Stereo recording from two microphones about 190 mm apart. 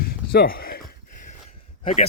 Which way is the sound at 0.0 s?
55° left (ahead or behind).